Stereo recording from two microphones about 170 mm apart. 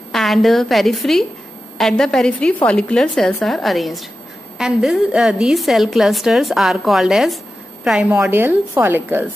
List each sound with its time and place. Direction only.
0.1 s a woman's voice: centre (ahead or behind)